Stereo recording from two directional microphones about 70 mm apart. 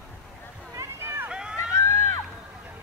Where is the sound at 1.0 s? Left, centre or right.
Right.